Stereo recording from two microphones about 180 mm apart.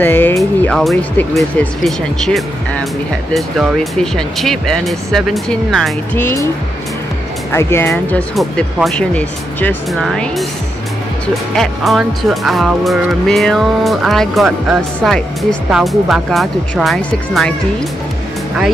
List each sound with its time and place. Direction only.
0.0 s speech: 10° left (ahead or behind)
6.1 s speech: 15° left (ahead or behind)
7.5 s speech: 15° left (ahead or behind)
8.4 s speech: centre (ahead or behind)
11.5 s speech: centre (ahead or behind)